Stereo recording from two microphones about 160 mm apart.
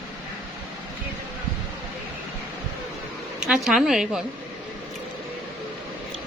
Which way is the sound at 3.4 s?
Centre (ahead or behind).